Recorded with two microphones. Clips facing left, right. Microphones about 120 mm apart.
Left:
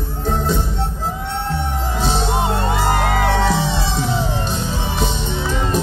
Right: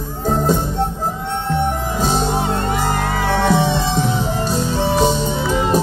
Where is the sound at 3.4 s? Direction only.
55° right (ahead or behind).